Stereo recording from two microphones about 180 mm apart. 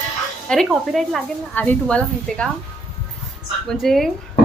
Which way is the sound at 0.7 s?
Centre (ahead or behind).